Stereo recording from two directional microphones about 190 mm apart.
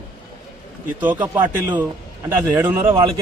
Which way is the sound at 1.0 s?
10° right (ahead or behind).